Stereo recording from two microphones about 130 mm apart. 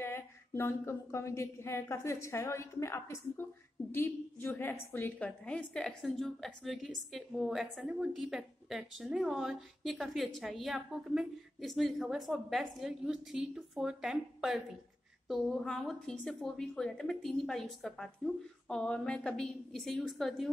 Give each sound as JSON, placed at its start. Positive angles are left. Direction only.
{"t": 0.0, "sound": "a woman's voice", "side_deg": 20}